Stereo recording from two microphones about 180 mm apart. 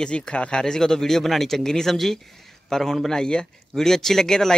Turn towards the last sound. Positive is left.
turn(degrees=5)  # may be behind; listen again after turning